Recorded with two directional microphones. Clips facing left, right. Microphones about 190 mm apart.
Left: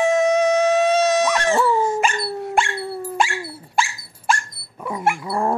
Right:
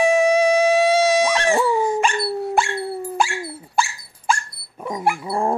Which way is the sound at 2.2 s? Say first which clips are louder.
Right 1 dB; 5° right (ahead or behind).